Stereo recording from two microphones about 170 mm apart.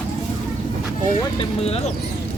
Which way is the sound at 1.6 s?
40° left (ahead or behind).